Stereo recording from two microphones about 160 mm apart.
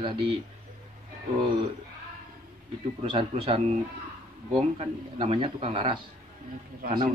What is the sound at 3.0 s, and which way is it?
Speech, 35° right (ahead or behind).